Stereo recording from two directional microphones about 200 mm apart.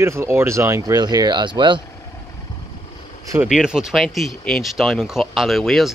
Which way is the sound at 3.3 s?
5° right (ahead or behind).